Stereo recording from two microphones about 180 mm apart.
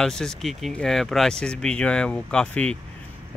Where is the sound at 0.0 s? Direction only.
5° left (ahead or behind).